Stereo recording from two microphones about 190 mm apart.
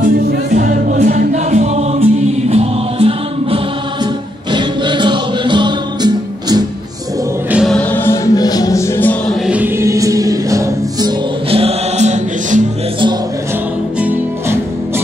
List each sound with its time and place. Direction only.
0.3 s music: 45° right (ahead or behind)
2.5 s choir: 30° right (ahead or behind)
7.5 s music: centre (ahead or behind)
9.3 s music: 5° right (ahead or behind); by 12.6 s 40° right (ahead or behind)
13.9 s music: 10° right (ahead or behind)